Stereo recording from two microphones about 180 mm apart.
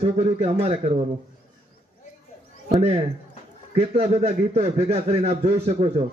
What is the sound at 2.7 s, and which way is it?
A man's voice, 35° right (ahead or behind).